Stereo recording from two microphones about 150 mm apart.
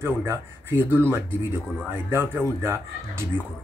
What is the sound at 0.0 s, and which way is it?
Speech, 15° right (ahead or behind).